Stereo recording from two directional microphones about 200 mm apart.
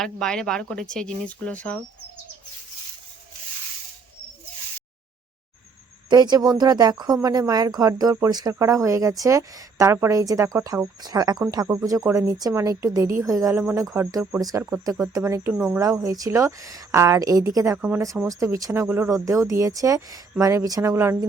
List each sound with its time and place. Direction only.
0.0 s speech: 5° left (ahead or behind)
6.1 s speech: 20° right (ahead or behind)